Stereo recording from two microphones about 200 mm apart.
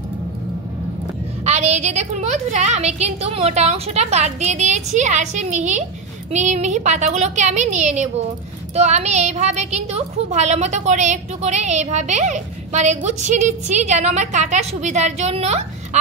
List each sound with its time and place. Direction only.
1.4 s a woman's voice: 35° right (ahead or behind)